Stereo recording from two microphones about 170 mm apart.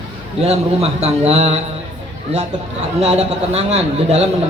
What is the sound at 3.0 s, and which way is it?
A man's voice, 40° right (ahead or behind).